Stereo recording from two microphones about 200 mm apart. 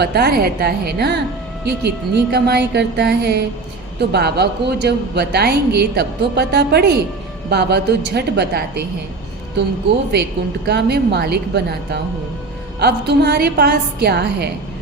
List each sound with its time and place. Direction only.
0.0 s a woman's voice: 55° right (ahead or behind)
10.7 s a woman's voice: 55° right (ahead or behind)